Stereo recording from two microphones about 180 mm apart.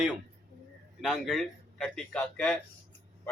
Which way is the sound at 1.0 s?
Centre (ahead or behind).